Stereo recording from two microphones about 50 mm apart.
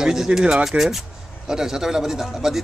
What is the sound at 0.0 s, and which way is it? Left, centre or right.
A man's voice, centre.